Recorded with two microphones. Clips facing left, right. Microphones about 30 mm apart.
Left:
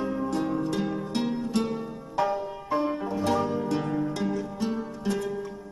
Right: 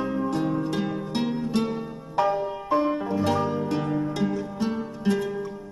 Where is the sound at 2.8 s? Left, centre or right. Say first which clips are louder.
Right 3 dB; centre.